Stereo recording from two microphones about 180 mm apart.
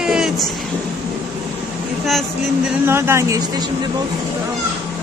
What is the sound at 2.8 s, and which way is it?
Speech, 15° right (ahead or behind).